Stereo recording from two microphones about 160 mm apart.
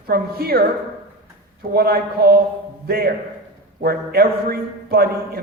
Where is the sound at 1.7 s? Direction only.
75° right (ahead or behind).